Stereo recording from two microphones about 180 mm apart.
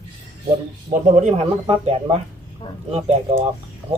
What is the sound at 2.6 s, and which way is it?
Speech, 25° left (ahead or behind).